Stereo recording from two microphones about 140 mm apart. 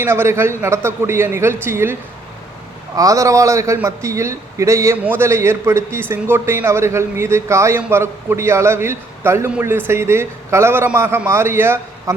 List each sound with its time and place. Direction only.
0.0 s a man's voice: 15° right (ahead or behind)